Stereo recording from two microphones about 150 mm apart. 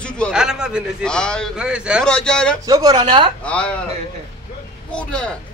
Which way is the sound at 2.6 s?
25° right (ahead or behind).